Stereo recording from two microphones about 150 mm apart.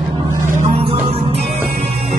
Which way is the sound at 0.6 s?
40° right (ahead or behind).